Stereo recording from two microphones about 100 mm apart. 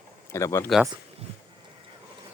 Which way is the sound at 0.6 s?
Centre (ahead or behind).